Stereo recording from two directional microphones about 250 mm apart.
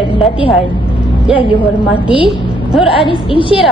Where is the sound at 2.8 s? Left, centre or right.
Left.